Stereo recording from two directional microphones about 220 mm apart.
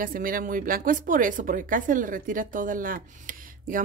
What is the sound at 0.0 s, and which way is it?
Speech, 40° right (ahead or behind).